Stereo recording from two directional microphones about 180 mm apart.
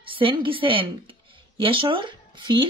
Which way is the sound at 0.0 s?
30° right (ahead or behind).